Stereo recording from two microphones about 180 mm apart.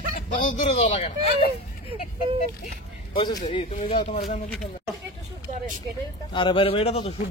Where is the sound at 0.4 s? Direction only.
45° left (ahead or behind).